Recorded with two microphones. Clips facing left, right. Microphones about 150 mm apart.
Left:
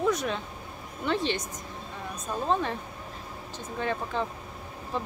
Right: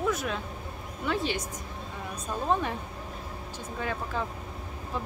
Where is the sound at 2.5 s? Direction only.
10° right (ahead or behind).